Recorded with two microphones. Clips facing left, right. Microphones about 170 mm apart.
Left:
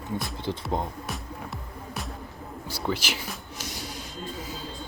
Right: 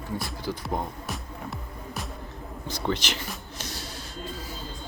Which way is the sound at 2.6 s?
10° left (ahead or behind).